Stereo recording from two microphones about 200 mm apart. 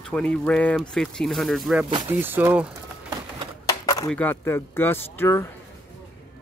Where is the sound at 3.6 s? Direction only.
20° left (ahead or behind).